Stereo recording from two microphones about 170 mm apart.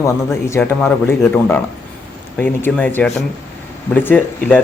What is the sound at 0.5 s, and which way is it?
Speech, 10° left (ahead or behind).